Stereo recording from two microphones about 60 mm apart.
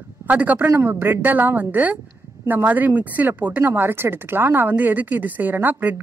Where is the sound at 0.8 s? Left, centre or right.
Right.